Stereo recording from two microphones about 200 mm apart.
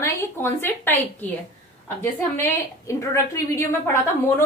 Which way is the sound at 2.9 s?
15° left (ahead or behind).